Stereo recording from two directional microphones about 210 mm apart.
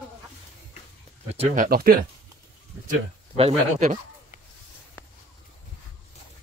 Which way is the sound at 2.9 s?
30° right (ahead or behind).